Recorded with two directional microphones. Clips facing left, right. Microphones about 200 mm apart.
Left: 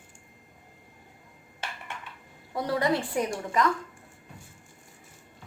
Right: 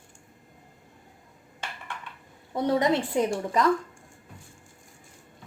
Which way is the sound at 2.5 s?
20° right (ahead or behind).